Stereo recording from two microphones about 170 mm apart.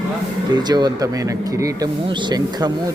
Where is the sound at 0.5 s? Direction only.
25° right (ahead or behind).